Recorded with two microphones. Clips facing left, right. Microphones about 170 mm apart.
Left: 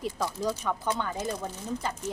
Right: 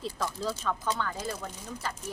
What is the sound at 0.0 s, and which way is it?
A woman's voice, 15° left (ahead or behind).